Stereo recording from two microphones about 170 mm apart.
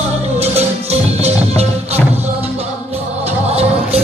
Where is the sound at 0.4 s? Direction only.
40° right (ahead or behind).